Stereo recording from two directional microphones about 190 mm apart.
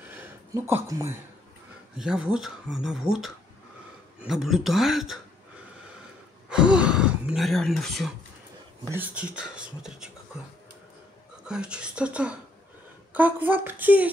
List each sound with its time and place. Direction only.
0.1 s a sound: 10° right (ahead or behind)
0.8 s speech: 15° right (ahead or behind)
2.0 s speech: 5° right (ahead or behind)
6.5 s speech: 5° right (ahead or behind)
11.4 s speech: 5° right (ahead or behind)